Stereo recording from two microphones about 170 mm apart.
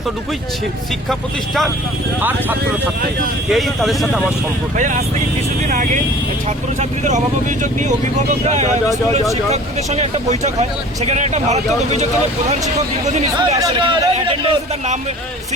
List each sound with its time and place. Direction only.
3.5 s speech: centre (ahead or behind)
4.8 s speech: 45° right (ahead or behind)
13.1 s speech: 40° right (ahead or behind)
13.6 s speech: 25° right (ahead or behind)